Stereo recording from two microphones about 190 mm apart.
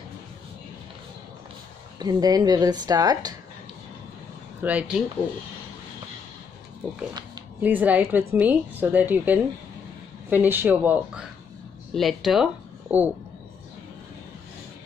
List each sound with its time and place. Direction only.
2.0 s a woman's voice: 20° right (ahead or behind)
4.6 s speech: 10° right (ahead or behind)
7.6 s a woman's voice: 10° right (ahead or behind)